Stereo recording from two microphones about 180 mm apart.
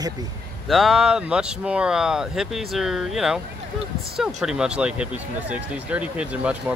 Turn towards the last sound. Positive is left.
turn(degrees=-5)  # may be behind; listen again after turning